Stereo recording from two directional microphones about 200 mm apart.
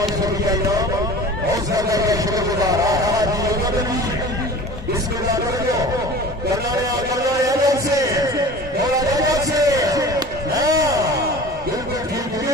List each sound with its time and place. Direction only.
1.7 s a man's voice: 15° right (ahead or behind)
7.4 s music: 15° right (ahead or behind)
9.0 s a sound: 15° right (ahead or behind)